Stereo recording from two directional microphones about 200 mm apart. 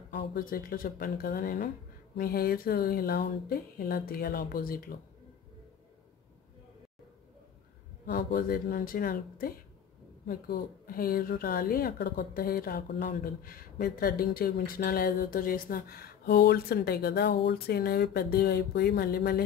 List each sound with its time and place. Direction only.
0.1 s a woman's voice: 45° left (ahead or behind)
8.1 s a woman's voice: 45° left (ahead or behind)